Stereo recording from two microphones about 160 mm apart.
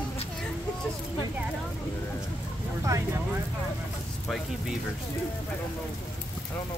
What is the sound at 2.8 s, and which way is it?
Speech, 20° right (ahead or behind).